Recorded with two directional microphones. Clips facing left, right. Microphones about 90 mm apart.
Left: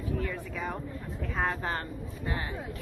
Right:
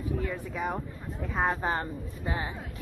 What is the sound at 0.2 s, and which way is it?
A woman's voice, 15° right (ahead or behind).